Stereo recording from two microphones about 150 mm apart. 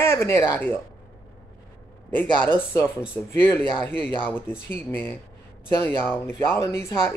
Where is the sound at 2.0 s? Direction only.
15° left (ahead or behind).